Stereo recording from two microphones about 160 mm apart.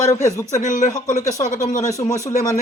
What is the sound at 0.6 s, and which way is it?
Speech, 50° left (ahead or behind).